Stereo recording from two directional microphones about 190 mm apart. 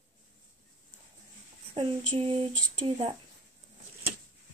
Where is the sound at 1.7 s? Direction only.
30° right (ahead or behind).